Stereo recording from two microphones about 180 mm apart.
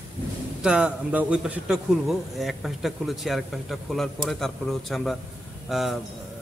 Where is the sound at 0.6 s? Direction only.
5° right (ahead or behind).